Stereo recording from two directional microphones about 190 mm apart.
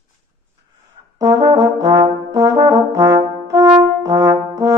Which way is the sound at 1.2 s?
20° right (ahead or behind).